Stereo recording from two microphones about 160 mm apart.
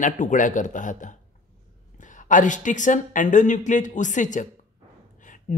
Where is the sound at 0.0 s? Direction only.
55° left (ahead or behind).